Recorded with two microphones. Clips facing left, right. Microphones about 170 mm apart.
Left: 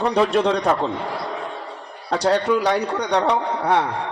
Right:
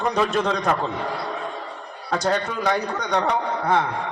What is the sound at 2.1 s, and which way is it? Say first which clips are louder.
A man's voice: left 5 dB; 30° left (ahead or behind).